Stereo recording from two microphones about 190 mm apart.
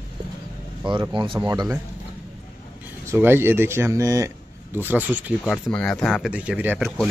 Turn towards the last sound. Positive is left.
turn(degrees=-10)  # may be behind; listen again after turning